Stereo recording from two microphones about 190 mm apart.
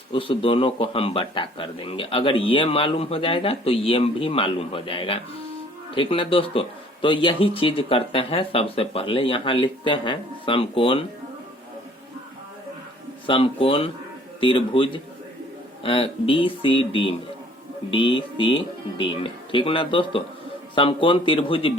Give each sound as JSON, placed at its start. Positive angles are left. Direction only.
{"t": 0.1, "sound": "a man's voice", "side_deg": 30}
{"t": 13.2, "sound": "a man's voice", "side_deg": 30}